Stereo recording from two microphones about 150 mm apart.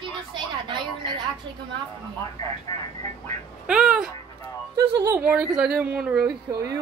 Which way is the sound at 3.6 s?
5° right (ahead or behind).